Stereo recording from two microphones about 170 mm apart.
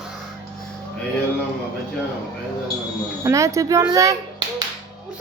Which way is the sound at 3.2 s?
20° right (ahead or behind).